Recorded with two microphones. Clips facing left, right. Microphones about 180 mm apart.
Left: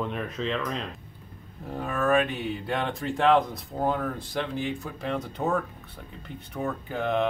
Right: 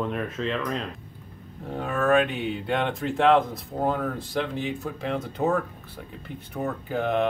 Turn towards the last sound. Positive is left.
turn(degrees=0)  # may be behind; listen again after turning